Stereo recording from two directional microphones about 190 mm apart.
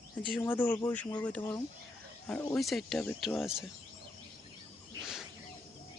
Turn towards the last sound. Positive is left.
turn(degrees=0)  # may be behind; listen again after turning